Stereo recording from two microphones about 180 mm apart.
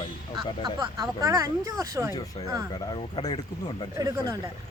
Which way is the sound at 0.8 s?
20° right (ahead or behind).